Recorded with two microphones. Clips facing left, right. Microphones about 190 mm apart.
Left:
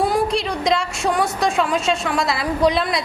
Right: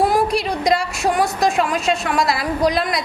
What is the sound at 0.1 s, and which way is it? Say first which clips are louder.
A woman's voice: right 2 dB; 25° left (ahead or behind).